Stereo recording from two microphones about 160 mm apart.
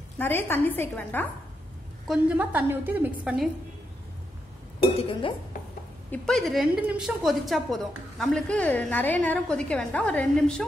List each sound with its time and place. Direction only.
0.2 s a woman's voice: 15° left (ahead or behind)
2.0 s a woman's voice: 10° right (ahead or behind)
4.9 s speech: 35° left (ahead or behind)
6.1 s a woman's voice: 5° left (ahead or behind)